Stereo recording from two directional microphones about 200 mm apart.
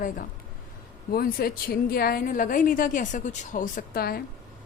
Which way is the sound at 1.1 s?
45° left (ahead or behind).